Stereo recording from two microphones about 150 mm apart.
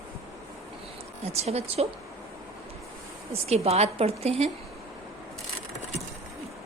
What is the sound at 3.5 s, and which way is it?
Speech, 45° right (ahead or behind).